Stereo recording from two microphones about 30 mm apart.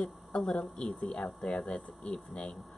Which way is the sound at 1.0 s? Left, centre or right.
Left.